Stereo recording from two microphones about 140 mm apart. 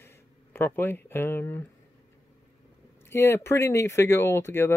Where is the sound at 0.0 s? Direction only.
15° left (ahead or behind).